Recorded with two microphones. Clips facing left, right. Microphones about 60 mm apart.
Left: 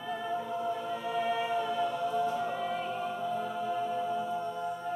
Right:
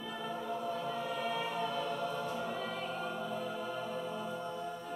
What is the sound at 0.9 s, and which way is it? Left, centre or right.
Choir, left.